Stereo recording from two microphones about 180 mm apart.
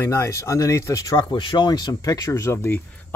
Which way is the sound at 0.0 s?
15° left (ahead or behind).